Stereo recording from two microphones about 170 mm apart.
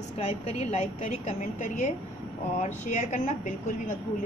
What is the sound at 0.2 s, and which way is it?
A woman's voice, 40° left (ahead or behind).